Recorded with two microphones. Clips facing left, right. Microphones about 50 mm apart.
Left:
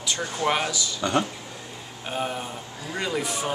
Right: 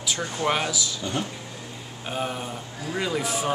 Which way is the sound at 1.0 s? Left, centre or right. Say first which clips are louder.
Left 10 dB; left.